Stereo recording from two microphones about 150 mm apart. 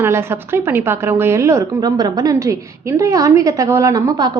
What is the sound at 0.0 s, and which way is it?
A woman's voice, 15° right (ahead or behind).